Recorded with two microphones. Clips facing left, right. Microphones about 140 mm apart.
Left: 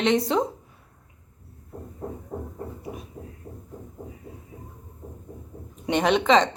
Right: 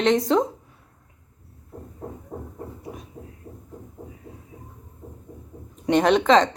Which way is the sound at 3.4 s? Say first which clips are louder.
Left 1 dB; 20° left (ahead or behind).